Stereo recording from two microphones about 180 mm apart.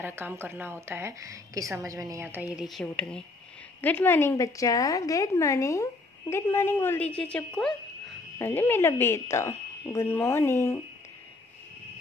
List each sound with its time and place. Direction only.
0.0 s a woman's voice: 15° right (ahead or behind)
2.5 s a woman's voice: centre (ahead or behind); by 10.8 s 15° left (ahead or behind)